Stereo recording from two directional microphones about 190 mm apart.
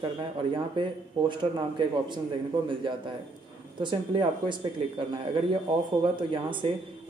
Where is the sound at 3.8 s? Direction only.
25° right (ahead or behind).